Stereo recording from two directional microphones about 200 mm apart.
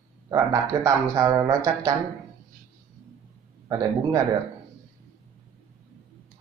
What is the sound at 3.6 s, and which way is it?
Speech, 20° right (ahead or behind).